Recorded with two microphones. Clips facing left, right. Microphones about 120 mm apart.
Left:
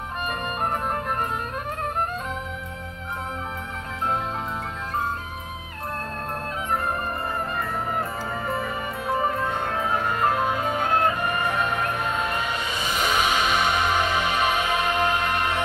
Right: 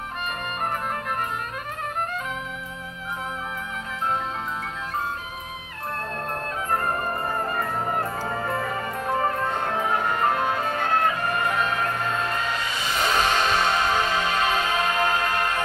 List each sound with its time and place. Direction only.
9.2 s music: 5° left (ahead or behind)